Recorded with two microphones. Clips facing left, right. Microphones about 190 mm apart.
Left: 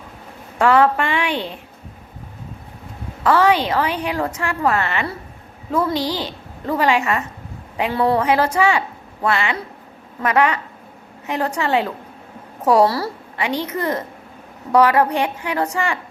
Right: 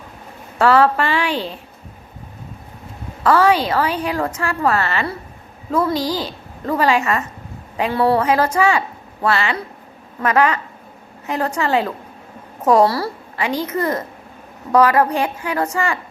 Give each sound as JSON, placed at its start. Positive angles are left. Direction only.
{"t": 0.6, "sound": "a woman's voice", "side_deg": 15}
{"t": 3.2, "sound": "a woman's voice", "side_deg": 15}
{"t": 6.0, "sound": "a woman's voice", "side_deg": -10}
{"t": 6.7, "sound": "a woman's voice", "side_deg": 15}